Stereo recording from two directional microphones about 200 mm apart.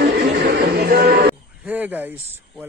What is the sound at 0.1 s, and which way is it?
Music, 55° right (ahead or behind).